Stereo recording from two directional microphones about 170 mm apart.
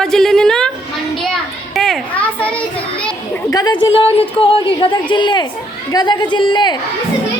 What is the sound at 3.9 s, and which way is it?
A woman's voice, 35° left (ahead or behind).